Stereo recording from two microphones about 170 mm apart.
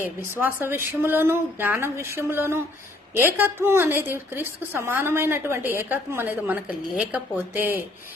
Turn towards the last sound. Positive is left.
turn(degrees=-10)  # may be behind; listen again after turning